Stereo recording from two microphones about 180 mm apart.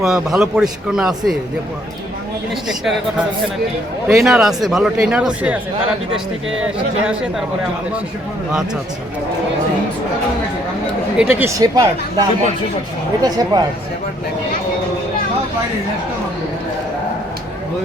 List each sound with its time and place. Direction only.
0.0 s speech: 5° right (ahead or behind)
2.6 s speech: centre (ahead or behind)
11.2 s speech: 10° right (ahead or behind)
11.6 s speech: 20° right (ahead or behind)
13.2 s speech: 20° right (ahead or behind)